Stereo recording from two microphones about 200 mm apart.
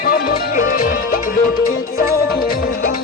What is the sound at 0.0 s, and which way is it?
Music, 45° left (ahead or behind).